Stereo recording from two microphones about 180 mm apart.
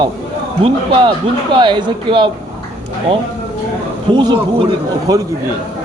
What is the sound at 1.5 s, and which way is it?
Speech, 25° right (ahead or behind).